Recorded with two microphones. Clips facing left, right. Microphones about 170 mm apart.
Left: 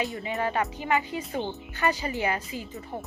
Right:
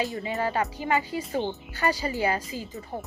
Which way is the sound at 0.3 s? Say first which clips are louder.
Even; 35° right (ahead or behind).